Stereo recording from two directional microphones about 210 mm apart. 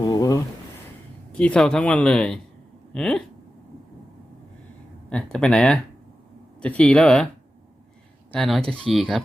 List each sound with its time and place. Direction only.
0.0 s a sound: 20° left (ahead or behind)
1.3 s speech: 5° left (ahead or behind)
5.0 s speech: 5° left (ahead or behind)
8.3 s speech: centre (ahead or behind)